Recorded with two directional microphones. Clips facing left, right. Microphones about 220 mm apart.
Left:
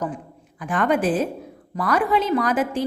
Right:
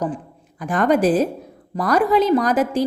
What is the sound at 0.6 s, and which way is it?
A woman's voice, 40° right (ahead or behind).